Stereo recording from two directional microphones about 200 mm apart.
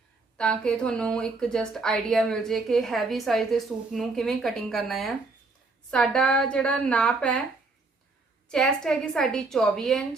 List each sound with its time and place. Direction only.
0.3 s speech: 5° left (ahead or behind)
8.4 s speech: 5° left (ahead or behind)